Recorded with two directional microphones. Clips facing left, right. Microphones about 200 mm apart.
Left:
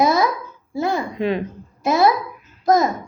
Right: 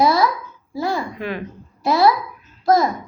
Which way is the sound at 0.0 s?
20° left (ahead or behind).